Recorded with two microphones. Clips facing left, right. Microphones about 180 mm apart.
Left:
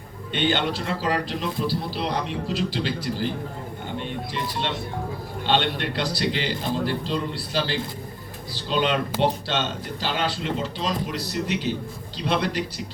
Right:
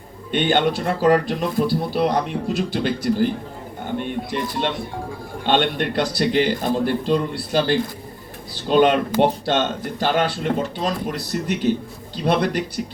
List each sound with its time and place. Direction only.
0.3 s speech: 50° right (ahead or behind)
3.9 s a sound: 50° right (ahead or behind)
5.5 s speech: 50° right (ahead or behind)